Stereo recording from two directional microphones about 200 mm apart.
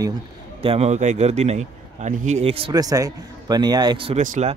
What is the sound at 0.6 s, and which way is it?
A man's voice, 30° right (ahead or behind).